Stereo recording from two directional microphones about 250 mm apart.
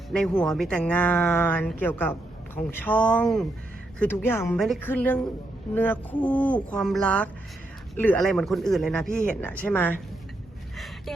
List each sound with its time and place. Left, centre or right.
0.1 s speech: centre